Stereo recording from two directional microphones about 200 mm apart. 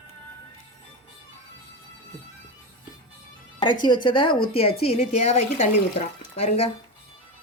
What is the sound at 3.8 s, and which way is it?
Speech, 25° left (ahead or behind).